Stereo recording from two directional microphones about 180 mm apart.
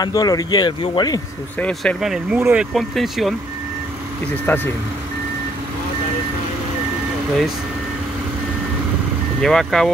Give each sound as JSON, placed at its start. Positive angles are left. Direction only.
{"t": 0.0, "sound": "speech", "side_deg": 20}
{"t": 1.6, "sound": "speech", "side_deg": 5}
{"t": 2.3, "sound": "speech", "side_deg": -10}
{"t": 2.7, "sound": "speech", "side_deg": 0}
{"t": 4.5, "sound": "speech", "side_deg": 10}
{"t": 9.4, "sound": "speech", "side_deg": 0}